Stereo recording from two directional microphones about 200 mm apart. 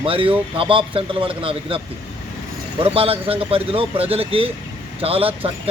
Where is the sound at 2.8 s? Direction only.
30° right (ahead or behind).